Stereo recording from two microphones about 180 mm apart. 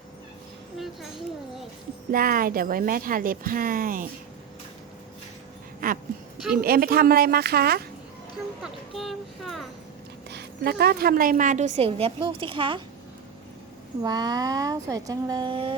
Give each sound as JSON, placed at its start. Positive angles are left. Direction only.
{"t": 2.1, "sound": "speech", "side_deg": -55}
{"t": 5.8, "sound": "a sound", "side_deg": -50}
{"t": 6.6, "sound": "speech", "side_deg": -55}
{"t": 8.6, "sound": "a child's voice", "side_deg": 0}
{"t": 10.2, "sound": "a woman's voice", "side_deg": -65}
{"t": 14.0, "sound": "speech", "side_deg": -20}